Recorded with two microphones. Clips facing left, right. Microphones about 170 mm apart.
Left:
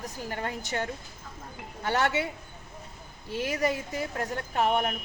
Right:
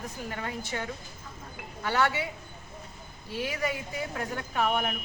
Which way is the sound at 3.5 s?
40° left (ahead or behind).